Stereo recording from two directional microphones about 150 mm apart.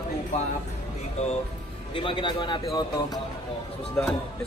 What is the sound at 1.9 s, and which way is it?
A man's voice, 35° left (ahead or behind).